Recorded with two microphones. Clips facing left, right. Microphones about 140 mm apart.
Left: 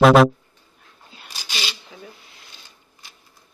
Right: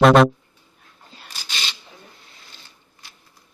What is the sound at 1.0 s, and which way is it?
Sneeze, centre (ahead or behind).